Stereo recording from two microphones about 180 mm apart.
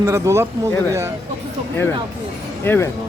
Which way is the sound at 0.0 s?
15° right (ahead or behind).